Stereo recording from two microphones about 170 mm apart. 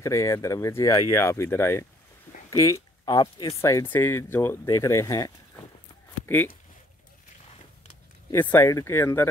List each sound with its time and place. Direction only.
0.0 s speech: 15° left (ahead or behind)
8.3 s speech: 10° left (ahead or behind)